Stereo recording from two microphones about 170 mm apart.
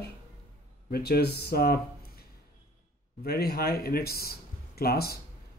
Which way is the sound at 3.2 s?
65° left (ahead or behind).